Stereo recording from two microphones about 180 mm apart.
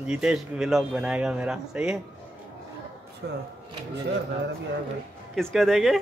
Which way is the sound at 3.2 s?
70° right (ahead or behind).